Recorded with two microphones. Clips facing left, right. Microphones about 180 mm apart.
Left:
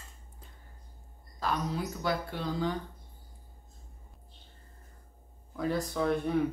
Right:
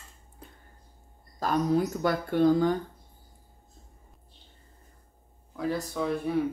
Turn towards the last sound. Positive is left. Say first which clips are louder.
# even
turn(degrees=0)  # may be behind; listen again after turning